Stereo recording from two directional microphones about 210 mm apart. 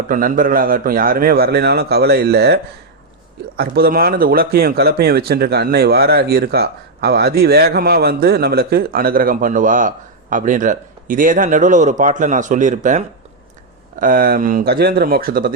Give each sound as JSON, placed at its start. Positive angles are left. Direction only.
{"t": 0.1, "sound": "speech", "side_deg": -40}
{"t": 3.6, "sound": "speech", "side_deg": -45}